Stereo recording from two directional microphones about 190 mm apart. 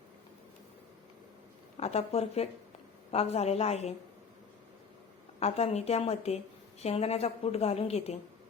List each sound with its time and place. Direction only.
1.8 s a woman's voice: 35° left (ahead or behind)
5.4 s a woman's voice: 35° left (ahead or behind)